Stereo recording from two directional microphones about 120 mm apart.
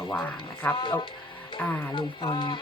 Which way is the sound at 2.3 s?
40° left (ahead or behind).